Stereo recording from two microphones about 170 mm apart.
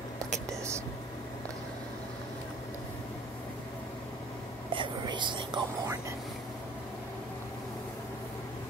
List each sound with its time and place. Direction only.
4.7 s speech: 30° right (ahead or behind)